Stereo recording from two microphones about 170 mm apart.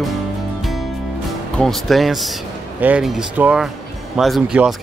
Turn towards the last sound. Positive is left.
turn(degrees=-5)  # may be behind; listen again after turning